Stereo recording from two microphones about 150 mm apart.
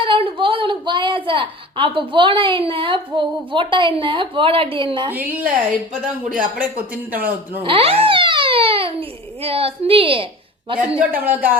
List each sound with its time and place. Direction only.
0.0 s a woman's voice: 35° right (ahead or behind)
5.1 s speech: 10° right (ahead or behind)
7.6 s a child's voice: 40° right (ahead or behind)
10.8 s speech: 10° right (ahead or behind)